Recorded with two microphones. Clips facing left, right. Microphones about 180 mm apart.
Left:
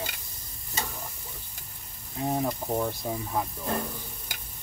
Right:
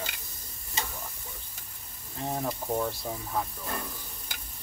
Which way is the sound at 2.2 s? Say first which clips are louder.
Left 4 dB; 15° left (ahead or behind).